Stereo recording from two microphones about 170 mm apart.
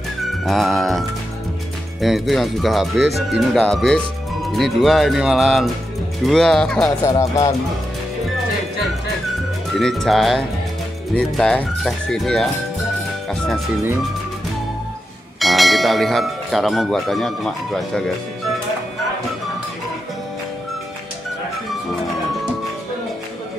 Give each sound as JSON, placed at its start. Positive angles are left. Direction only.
{"t": 0.5, "sound": "speech", "side_deg": 0}
{"t": 7.1, "sound": "speech", "side_deg": 20}
{"t": 9.8, "sound": "speech", "side_deg": 0}
{"t": 15.3, "sound": "speech", "side_deg": 0}